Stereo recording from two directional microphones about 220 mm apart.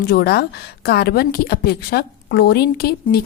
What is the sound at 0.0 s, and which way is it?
A woman's voice, 45° left (ahead or behind).